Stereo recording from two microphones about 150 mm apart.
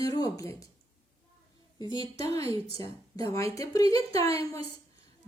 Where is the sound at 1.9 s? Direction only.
25° left (ahead or behind).